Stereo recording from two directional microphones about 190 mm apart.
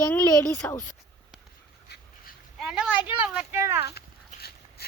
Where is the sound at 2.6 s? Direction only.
5° right (ahead or behind).